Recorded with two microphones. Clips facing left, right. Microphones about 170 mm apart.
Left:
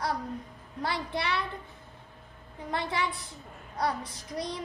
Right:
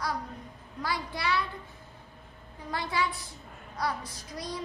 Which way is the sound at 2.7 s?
25° left (ahead or behind).